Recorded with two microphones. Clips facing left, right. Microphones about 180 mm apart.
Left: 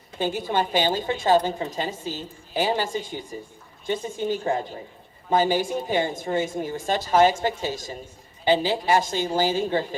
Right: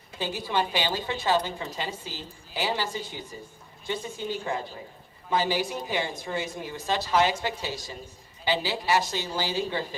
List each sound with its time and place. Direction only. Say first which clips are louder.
0.2 s a woman's voice: left 4 dB; 50° left (ahead or behind)